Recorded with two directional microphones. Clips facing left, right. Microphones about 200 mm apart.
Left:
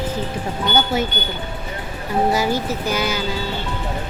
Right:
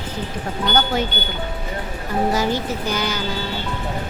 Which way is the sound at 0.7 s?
10° left (ahead or behind).